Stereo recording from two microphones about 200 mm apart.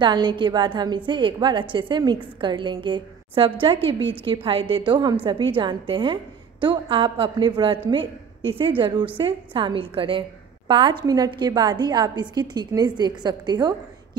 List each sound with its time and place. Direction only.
0.0 s a woman's voice: 20° right (ahead or behind)